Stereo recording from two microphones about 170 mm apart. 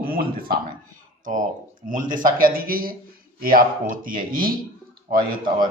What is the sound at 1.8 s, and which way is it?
A man's voice, 50° right (ahead or behind).